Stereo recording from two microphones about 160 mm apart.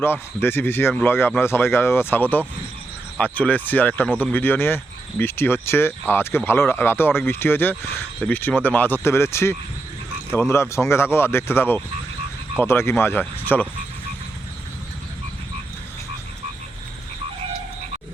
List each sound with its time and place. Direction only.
0.0 s speech: 15° left (ahead or behind)